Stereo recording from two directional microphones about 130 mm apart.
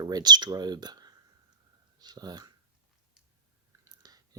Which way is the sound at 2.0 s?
30° right (ahead or behind).